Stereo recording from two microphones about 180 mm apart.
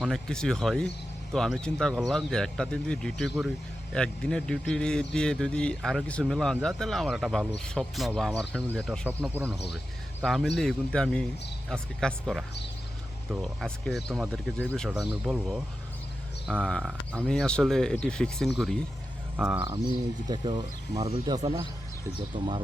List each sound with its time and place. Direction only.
0.0 s speech: centre (ahead or behind)
10.6 s speech: 5° left (ahead or behind)
19.4 s speech: 10° right (ahead or behind)
19.7 s speech: 25° right (ahead or behind)